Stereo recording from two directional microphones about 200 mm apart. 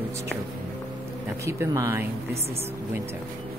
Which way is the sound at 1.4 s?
15° right (ahead or behind).